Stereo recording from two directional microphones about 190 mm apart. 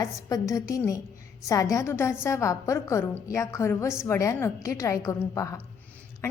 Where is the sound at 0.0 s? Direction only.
20° left (ahead or behind).